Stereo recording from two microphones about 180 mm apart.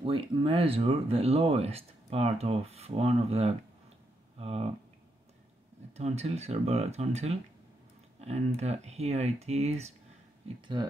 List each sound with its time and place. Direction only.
0.0 s speech: 30° right (ahead or behind)
5.9 s speech: 35° right (ahead or behind)
10.8 s speech: 25° right (ahead or behind)